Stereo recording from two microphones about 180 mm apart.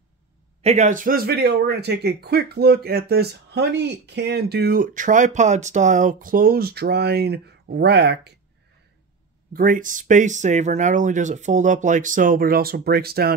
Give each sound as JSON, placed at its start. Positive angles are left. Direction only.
{"t": 0.6, "sound": "speech", "side_deg": -40}
{"t": 9.5, "sound": "speech", "side_deg": -50}